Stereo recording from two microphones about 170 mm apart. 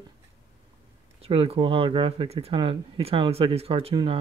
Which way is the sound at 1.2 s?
35° right (ahead or behind).